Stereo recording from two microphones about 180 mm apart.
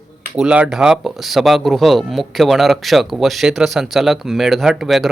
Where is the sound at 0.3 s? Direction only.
5° right (ahead or behind).